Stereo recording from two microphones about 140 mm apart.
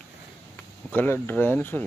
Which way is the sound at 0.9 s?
15° left (ahead or behind).